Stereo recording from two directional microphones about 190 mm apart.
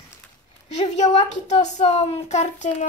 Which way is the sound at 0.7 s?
35° left (ahead or behind).